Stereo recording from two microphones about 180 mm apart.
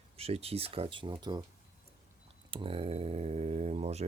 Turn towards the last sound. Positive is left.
turn(degrees=-35)  # may be behind; listen again after turning